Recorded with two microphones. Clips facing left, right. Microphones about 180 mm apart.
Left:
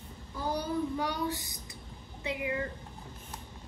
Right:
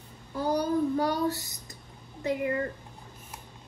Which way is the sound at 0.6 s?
40° right (ahead or behind).